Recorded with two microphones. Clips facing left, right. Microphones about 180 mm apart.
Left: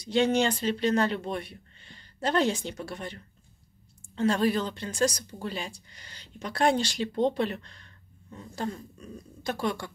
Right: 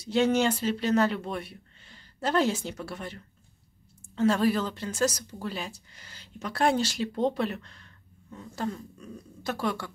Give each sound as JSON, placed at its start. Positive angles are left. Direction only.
{"t": 0.0, "sound": "speech", "side_deg": -5}
{"t": 4.2, "sound": "speech", "side_deg": -5}
{"t": 9.4, "sound": "speech", "side_deg": -5}